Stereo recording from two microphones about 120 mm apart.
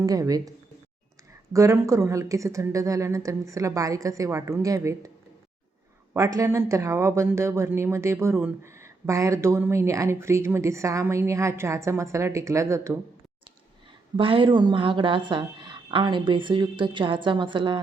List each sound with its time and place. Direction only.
0.0 s speech: 30° right (ahead or behind)
1.5 s speech: 25° right (ahead or behind)
6.1 s speech: 25° right (ahead or behind)
14.2 s a woman's voice: 45° right (ahead or behind)